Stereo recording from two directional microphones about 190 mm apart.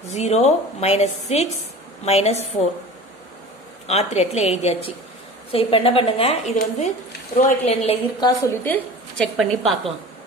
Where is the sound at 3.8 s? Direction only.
35° left (ahead or behind).